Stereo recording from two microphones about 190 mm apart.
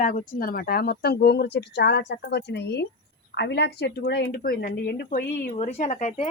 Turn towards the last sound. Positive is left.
turn(degrees=35)  # may be behind; listen again after turning